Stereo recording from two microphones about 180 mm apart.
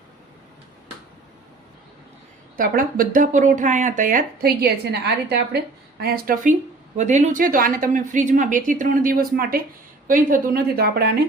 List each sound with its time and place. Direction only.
2.6 s speech: 50° right (ahead or behind); by 5.5 s 65° right (ahead or behind)
6.0 s speech: 55° right (ahead or behind)